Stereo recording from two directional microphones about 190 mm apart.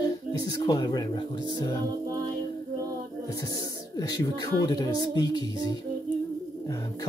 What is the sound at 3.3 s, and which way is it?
Speech, 20° left (ahead or behind).